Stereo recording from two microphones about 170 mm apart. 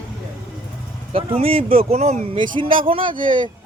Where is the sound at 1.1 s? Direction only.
35° right (ahead or behind).